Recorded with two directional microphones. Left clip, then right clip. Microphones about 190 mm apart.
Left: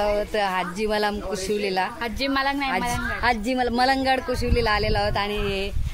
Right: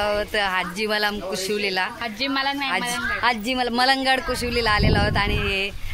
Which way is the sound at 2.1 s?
70° left (ahead or behind).